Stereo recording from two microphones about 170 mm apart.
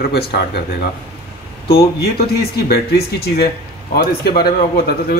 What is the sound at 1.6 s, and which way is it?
Speech, 65° left (ahead or behind).